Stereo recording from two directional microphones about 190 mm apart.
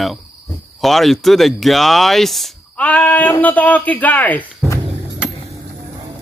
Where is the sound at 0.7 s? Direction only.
Centre (ahead or behind).